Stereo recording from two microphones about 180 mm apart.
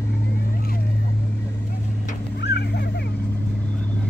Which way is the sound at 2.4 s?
65° left (ahead or behind).